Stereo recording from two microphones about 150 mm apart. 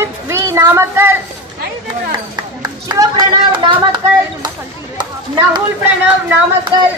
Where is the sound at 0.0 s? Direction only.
20° right (ahead or behind).